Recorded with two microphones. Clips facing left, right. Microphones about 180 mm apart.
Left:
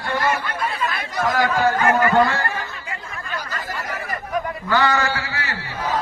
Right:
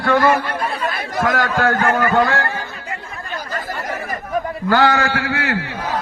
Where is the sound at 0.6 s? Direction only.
40° right (ahead or behind).